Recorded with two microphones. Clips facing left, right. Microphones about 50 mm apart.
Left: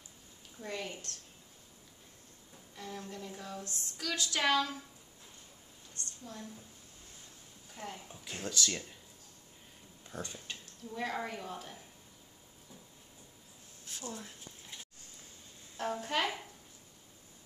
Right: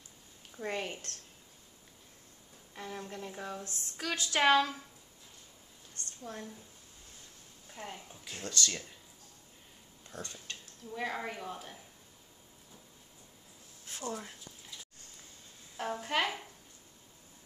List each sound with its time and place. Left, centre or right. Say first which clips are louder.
0.6 s speech: right 4 dB; right
2.7 s a woman's voice: right 2 dB; right
6.3 s speech: right 5 dB; right
7.7 s speech: even; centre
8.1 s speech: left 1 dB; centre
10.1 s speech: left 1 dB; centre
10.9 s a woman's voice: even; centre
13.9 s speech: right 5 dB; right
15.8 s a woman's voice: right 1 dB; centre